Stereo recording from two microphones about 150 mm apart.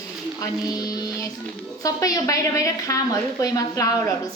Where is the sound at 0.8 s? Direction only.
25° left (ahead or behind).